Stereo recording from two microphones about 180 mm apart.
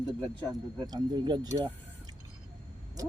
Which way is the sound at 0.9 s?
25° right (ahead or behind).